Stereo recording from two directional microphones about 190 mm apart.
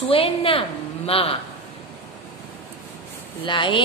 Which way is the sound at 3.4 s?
25° left (ahead or behind).